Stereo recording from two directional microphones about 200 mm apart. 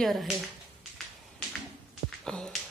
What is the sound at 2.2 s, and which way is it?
Speech, 5° left (ahead or behind).